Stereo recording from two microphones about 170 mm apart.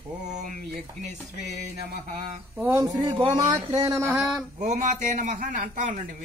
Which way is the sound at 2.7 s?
20° right (ahead or behind).